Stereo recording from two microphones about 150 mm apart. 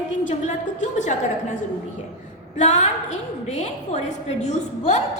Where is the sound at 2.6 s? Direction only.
50° left (ahead or behind).